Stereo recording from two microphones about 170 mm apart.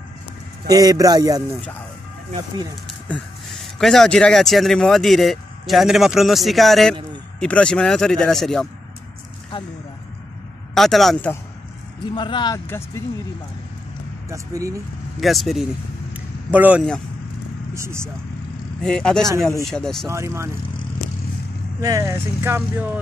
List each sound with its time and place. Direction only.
0.7 s speech: 20° right (ahead or behind)
3.1 s a man's voice: centre (ahead or behind)
10.7 s a man's voice: centre (ahead or behind)
12.1 s speech: 30° left (ahead or behind)
12.6 s speech: 15° left (ahead or behind)
14.3 s speech: 20° right (ahead or behind)
15.1 s speech: centre (ahead or behind); by 18.1 s 15° right (ahead or behind)
18.8 s a man's voice: 5° left (ahead or behind)
20.1 s speech: 15° right (ahead or behind)
21.8 s speech: 15° right (ahead or behind)